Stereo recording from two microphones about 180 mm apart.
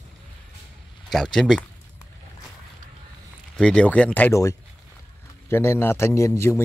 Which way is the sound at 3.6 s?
5° left (ahead or behind).